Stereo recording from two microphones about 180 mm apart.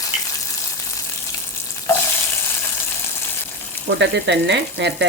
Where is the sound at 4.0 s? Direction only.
75° right (ahead or behind).